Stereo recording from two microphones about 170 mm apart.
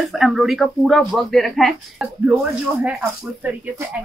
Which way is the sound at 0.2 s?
Centre (ahead or behind).